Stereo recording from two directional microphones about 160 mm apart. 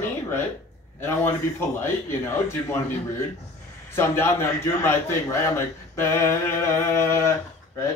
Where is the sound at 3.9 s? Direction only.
15° left (ahead or behind).